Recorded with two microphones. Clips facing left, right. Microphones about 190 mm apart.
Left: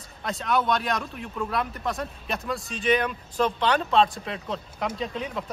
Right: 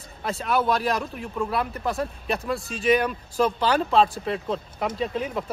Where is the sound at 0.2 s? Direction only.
5° right (ahead or behind).